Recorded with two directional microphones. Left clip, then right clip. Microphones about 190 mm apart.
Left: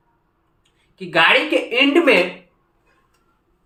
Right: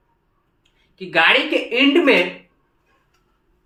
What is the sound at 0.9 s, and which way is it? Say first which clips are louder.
Speech: left 1 dB; 10° left (ahead or behind).